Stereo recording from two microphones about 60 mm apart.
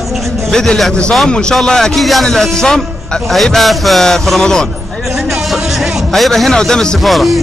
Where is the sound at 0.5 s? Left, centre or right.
Centre.